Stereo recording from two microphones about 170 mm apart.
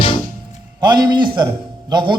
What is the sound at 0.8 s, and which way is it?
A man's voice, 25° right (ahead or behind).